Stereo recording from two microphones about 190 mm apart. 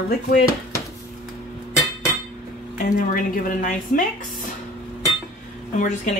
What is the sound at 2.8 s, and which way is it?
A woman's voice, 45° left (ahead or behind).